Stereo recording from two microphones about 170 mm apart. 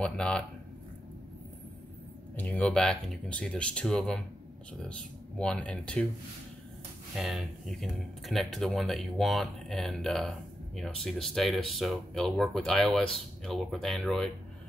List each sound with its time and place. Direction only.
0.0 s speech: 5° left (ahead or behind)
2.3 s speech: 10° left (ahead or behind)
5.4 s speech: 5° left (ahead or behind)
7.2 s speech: centre (ahead or behind)